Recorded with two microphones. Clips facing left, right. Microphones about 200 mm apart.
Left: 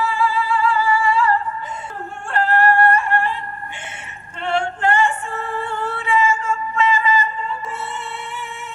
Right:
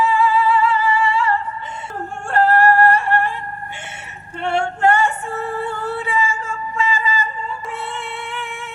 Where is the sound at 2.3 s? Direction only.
45° right (ahead or behind).